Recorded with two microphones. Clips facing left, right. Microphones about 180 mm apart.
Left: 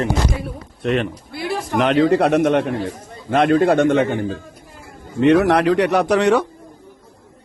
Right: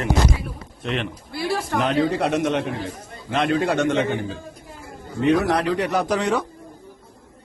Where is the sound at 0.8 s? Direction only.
50° left (ahead or behind).